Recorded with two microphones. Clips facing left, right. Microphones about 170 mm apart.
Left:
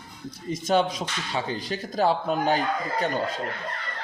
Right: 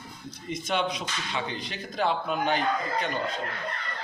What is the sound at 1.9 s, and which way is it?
A man's voice, 40° left (ahead or behind).